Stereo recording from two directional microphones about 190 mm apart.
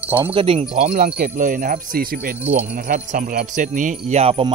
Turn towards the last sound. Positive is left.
turn(degrees=-30)  # may be behind; listen again after turning